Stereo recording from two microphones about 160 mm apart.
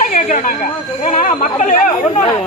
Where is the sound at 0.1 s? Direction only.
50° left (ahead or behind).